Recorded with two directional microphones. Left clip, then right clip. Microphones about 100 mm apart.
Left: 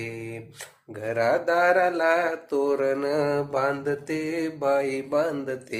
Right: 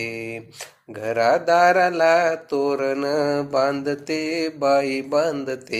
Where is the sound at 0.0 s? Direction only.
40° right (ahead or behind).